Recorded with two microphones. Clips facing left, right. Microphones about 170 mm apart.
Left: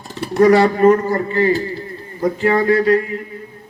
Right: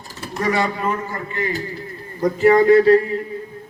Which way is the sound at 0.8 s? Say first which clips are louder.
Left 12 dB; 40° left (ahead or behind).